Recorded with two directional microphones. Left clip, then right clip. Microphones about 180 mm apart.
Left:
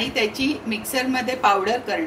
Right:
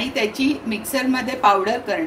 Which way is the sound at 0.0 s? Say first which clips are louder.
Right 1 dB; 45° right (ahead or behind).